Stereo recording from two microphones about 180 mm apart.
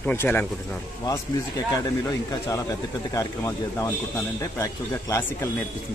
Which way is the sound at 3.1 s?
15° left (ahead or behind).